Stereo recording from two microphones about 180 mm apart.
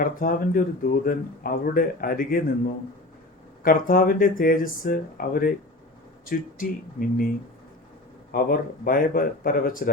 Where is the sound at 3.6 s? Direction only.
50° left (ahead or behind).